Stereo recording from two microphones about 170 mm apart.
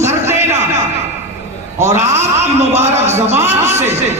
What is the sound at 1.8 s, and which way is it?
A man's voice, 15° right (ahead or behind).